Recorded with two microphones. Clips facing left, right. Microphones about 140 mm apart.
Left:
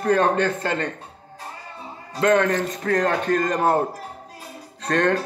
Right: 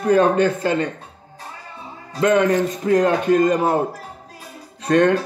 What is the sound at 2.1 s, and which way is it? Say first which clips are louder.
A man's voice: right 3 dB; 10° right (ahead or behind).